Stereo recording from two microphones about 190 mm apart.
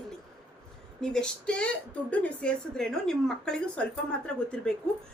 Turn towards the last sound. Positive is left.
turn(degrees=5)  # may be behind; listen again after turning